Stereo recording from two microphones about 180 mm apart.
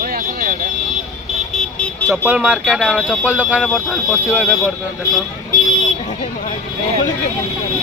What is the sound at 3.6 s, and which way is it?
Speech, 5° left (ahead or behind).